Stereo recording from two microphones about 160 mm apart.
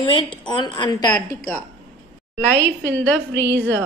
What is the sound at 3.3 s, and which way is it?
Speech, 90° right.